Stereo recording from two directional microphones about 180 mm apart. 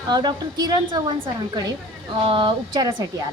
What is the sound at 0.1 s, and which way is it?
A woman's voice, 25° right (ahead or behind).